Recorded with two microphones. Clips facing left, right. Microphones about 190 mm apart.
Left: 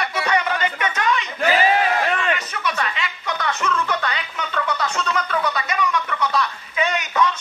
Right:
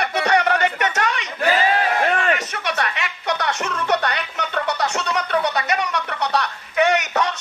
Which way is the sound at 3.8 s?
65° right (ahead or behind).